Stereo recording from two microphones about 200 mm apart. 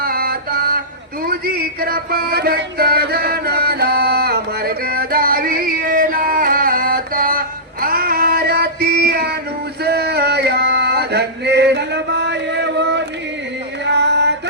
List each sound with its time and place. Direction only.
0.0 s chant: 50° right (ahead or behind)
1.2 s music: 50° right (ahead or behind)
9.8 s male singing: 55° right (ahead or behind)
13.8 s music: 60° right (ahead or behind)